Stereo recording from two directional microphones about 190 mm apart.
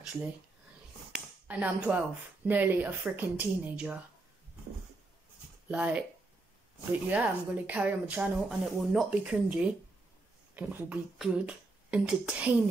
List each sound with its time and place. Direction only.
1.1 s speech: 10° right (ahead or behind)
5.7 s speech: 5° right (ahead or behind)